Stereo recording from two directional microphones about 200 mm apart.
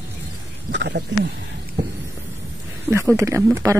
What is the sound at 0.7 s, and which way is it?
Speech, 60° right (ahead or behind).